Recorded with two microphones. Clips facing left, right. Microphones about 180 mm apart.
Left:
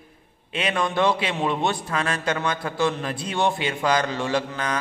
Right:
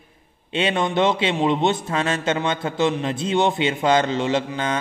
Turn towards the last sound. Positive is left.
turn(degrees=-25)  # may be behind; listen again after turning